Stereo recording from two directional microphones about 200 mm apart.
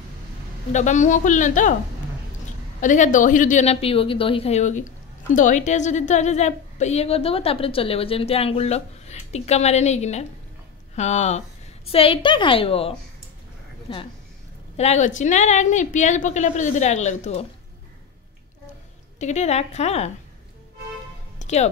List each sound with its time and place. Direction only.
0.7 s a woman's voice: 35° left (ahead or behind)
2.8 s a woman's voice: 40° left (ahead or behind)
19.1 s a woman's voice: 35° left (ahead or behind)
21.4 s music: 35° left (ahead or behind)